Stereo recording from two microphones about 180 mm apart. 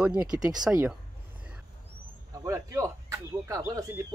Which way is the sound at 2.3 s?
20° right (ahead or behind).